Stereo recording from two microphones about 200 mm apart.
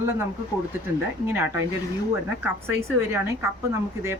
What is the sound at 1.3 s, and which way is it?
A woman's voice, 10° right (ahead or behind).